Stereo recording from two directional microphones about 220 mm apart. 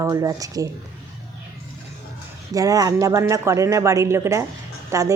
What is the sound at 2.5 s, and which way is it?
A woman's voice, 15° right (ahead or behind).